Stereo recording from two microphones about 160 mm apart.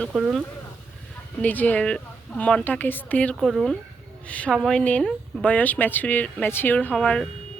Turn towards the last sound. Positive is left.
turn(degrees=5)  # may be behind; listen again after turning